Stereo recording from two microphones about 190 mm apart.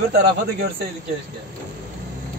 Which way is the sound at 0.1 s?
60° right (ahead or behind).